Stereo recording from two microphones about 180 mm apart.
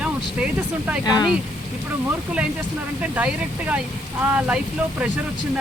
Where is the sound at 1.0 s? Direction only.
25° left (ahead or behind).